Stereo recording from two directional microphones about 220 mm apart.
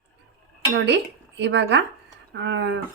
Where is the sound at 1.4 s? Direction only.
50° right (ahead or behind).